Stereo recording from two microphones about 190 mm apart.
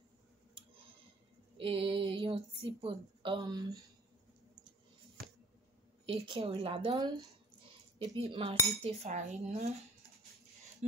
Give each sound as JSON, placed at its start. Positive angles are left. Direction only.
{"t": 1.6, "sound": "a woman's voice", "side_deg": -30}
{"t": 6.0, "sound": "speech", "side_deg": -30}
{"t": 8.2, "sound": "cutlery", "side_deg": -30}